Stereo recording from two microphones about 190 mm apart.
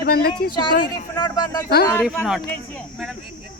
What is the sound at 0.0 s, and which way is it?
Speech, 55° left (ahead or behind).